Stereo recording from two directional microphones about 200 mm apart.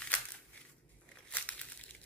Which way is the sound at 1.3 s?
5° left (ahead or behind).